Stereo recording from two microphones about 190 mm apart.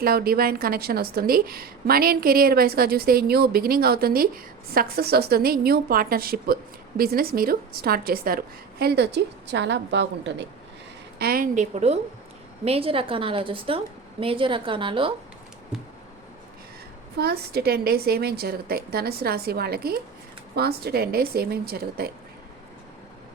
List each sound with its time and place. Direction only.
0.0 s a woman's voice: 50° right (ahead or behind)
11.2 s a woman's voice: 50° right (ahead or behind); by 15.1 s 25° right (ahead or behind)
15.7 s a sound: centre (ahead or behind)
17.2 s a woman's voice: 55° right (ahead or behind)